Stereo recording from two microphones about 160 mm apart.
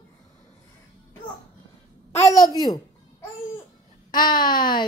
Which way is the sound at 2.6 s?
25° left (ahead or behind).